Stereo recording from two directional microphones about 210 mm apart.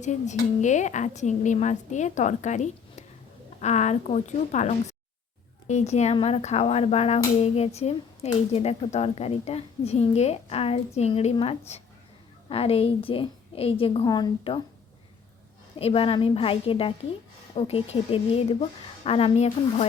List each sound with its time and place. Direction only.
0.0 s a woman's voice: 35° left (ahead or behind)
15.8 s a woman's voice: 25° left (ahead or behind)